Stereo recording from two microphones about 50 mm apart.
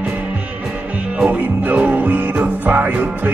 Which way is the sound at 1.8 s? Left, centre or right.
Right.